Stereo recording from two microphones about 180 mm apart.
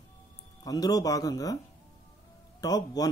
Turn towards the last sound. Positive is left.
turn(degrees=20)  # may be behind; listen again after turning